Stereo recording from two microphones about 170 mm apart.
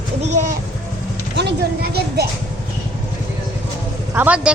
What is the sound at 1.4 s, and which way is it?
Speech, 75° right (ahead or behind).